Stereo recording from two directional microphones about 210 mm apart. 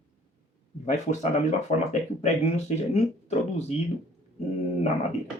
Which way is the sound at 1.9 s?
35° left (ahead or behind).